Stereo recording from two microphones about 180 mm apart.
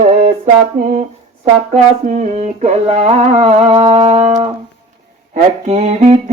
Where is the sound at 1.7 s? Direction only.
45° right (ahead or behind).